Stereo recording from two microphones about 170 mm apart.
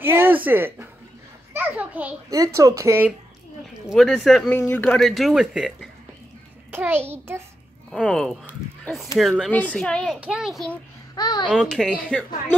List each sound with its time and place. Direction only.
0.0 s a sound: 15° right (ahead or behind)
2.3 s speech: 20° right (ahead or behind)
3.9 s a man's voice: centre (ahead or behind)
5.0 s a child's voice: centre (ahead or behind)
7.9 s speech: centre (ahead or behind)
11.1 s a child's voice: 25° left (ahead or behind)
11.5 s speech: centre (ahead or behind)